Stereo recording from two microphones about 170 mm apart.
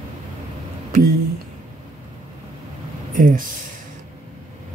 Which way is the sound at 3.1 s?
55° right (ahead or behind).